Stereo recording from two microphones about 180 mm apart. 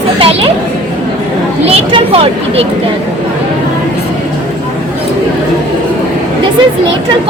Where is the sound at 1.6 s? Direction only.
30° right (ahead or behind).